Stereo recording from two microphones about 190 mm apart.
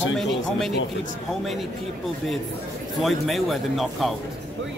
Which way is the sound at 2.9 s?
Centre (ahead or behind).